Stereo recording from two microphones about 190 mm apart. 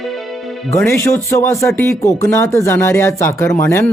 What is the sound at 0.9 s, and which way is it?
Speech, 15° left (ahead or behind).